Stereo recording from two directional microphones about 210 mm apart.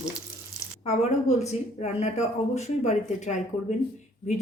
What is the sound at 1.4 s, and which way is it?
Speech, 30° left (ahead or behind).